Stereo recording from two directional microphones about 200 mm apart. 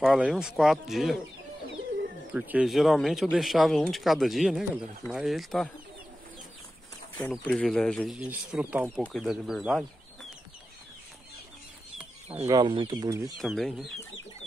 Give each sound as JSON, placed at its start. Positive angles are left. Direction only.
{"t": 0.0, "sound": "speech", "side_deg": -5}
{"t": 2.3, "sound": "speech", "side_deg": -5}
{"t": 7.2, "sound": "speech", "side_deg": 5}
{"t": 8.9, "sound": "speech", "side_deg": 5}
{"t": 12.4, "sound": "speech", "side_deg": -20}
{"t": 13.4, "sound": "speech", "side_deg": 0}